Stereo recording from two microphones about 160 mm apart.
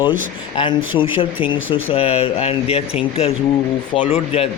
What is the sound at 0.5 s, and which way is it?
Speech, 30° left (ahead or behind).